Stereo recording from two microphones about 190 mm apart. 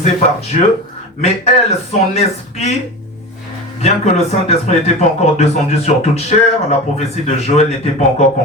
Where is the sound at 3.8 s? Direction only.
35° left (ahead or behind).